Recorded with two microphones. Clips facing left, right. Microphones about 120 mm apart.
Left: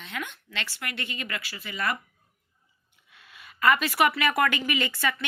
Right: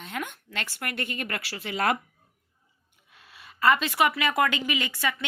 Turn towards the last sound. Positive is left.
turn(degrees=-15)  # may be behind; listen again after turning